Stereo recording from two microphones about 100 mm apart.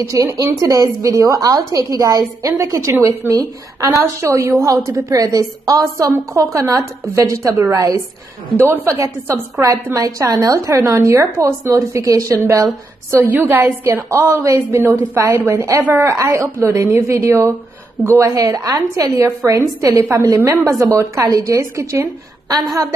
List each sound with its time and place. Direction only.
0.0 s a woman's voice: 35° right (ahead or behind)